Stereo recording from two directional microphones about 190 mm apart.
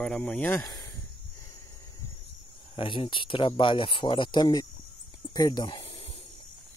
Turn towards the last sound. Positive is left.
turn(degrees=20)  # may be behind; listen again after turning